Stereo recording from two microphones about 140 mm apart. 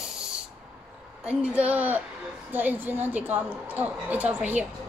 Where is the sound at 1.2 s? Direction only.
10° right (ahead or behind).